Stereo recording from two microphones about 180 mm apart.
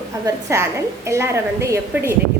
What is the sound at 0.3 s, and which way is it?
A woman's voice, 15° right (ahead or behind).